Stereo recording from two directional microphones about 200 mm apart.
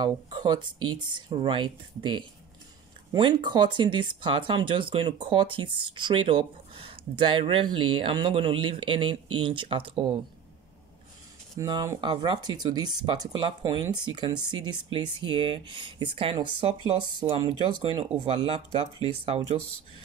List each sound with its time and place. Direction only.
0.0 s speech: 20° right (ahead or behind)
11.5 s speech: 20° right (ahead or behind)